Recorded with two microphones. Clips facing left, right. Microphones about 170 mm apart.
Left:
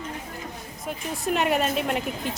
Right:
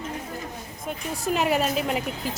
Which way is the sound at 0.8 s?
Centre (ahead or behind).